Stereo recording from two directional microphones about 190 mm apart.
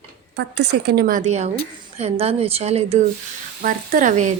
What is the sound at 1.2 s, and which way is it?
A woman's voice, 35° right (ahead or behind).